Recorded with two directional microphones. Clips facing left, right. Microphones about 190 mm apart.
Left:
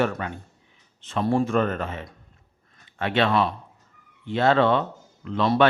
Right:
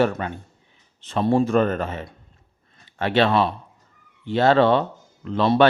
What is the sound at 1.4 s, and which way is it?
Speech, 40° right (ahead or behind).